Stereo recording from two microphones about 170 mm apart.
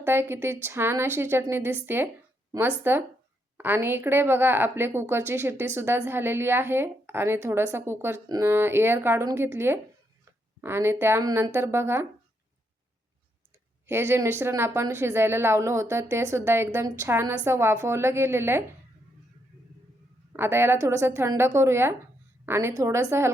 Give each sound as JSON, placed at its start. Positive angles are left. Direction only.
{"t": 0.0, "sound": "a woman's voice", "side_deg": -15}
{"t": 13.8, "sound": "a woman's voice", "side_deg": -15}
{"t": 20.3, "sound": "a woman's voice", "side_deg": -15}